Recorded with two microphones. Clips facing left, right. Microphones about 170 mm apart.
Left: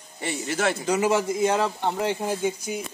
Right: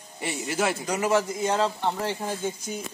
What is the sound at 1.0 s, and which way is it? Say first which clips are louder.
Speech: left 1 dB; 20° left (ahead or behind).